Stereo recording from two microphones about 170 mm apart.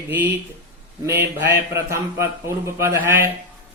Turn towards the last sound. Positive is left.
turn(degrees=-15)  # may be behind; listen again after turning